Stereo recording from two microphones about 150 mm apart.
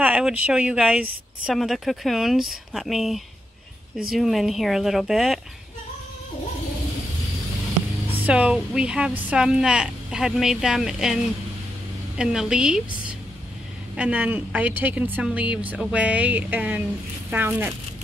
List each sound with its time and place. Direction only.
0.0 s speech: 10° right (ahead or behind)
8.3 s speech: 5° right (ahead or behind)
12.2 s speech: 5° right (ahead or behind)
13.9 s a woman's voice: 10° right (ahead or behind)